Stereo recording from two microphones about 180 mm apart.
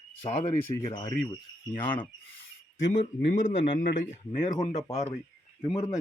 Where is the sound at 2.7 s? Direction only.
90° left.